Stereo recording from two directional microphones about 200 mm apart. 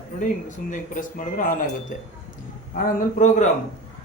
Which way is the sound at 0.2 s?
40° left (ahead or behind).